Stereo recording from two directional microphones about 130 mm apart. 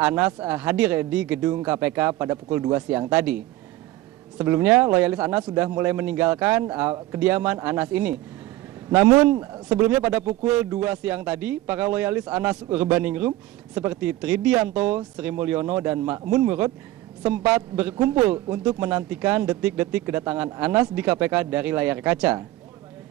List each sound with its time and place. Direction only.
0.4 s a man's voice: 10° right (ahead or behind)